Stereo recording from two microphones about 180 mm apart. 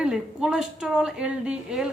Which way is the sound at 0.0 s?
5° right (ahead or behind).